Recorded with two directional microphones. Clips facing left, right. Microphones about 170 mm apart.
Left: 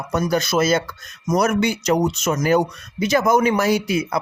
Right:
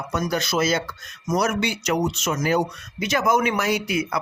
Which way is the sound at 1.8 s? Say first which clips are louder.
Left 4 dB; 35° left (ahead or behind).